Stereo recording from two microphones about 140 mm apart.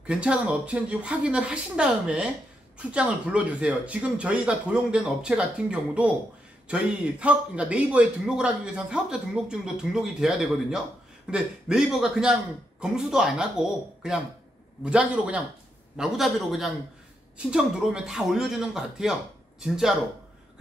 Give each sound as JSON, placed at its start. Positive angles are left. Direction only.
{"t": 0.0, "sound": "a man's voice", "side_deg": -10}